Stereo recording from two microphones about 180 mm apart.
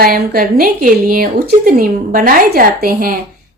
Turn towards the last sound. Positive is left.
turn(degrees=-55)  # may be behind; listen again after turning